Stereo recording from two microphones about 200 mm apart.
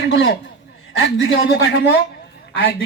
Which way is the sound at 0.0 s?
55° left (ahead or behind).